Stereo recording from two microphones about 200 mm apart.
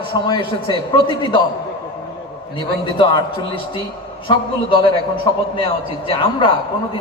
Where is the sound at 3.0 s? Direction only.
25° left (ahead or behind).